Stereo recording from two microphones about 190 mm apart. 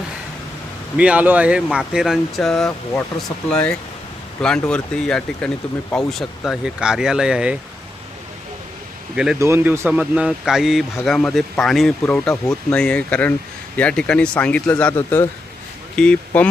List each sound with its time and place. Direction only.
0.9 s speech: 5° right (ahead or behind)
9.1 s speech: 5° right (ahead or behind)
9.4 s speech: 15° right (ahead or behind); by 16.5 s 5° left (ahead or behind)